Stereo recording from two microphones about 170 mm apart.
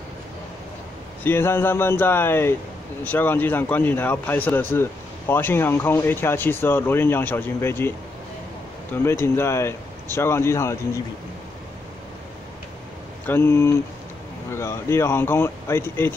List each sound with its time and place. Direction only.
1.2 s speech: 15° left (ahead or behind)
9.2 s speech: 15° left (ahead or behind)
13.3 s speech: 15° left (ahead or behind)